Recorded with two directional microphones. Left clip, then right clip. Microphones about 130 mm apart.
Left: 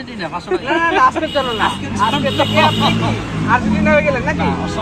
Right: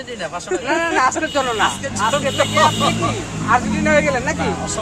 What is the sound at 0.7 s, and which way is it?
Speech, 40° right (ahead or behind).